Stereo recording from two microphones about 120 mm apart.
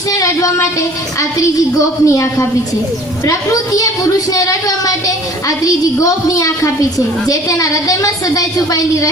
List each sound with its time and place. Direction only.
0.1 s speech: 30° left (ahead or behind)
2.0 s a woman's voice: 25° left (ahead or behind)
6.0 s a woman's voice: 30° left (ahead or behind)